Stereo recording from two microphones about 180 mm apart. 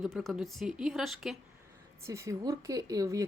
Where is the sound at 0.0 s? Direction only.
Centre (ahead or behind).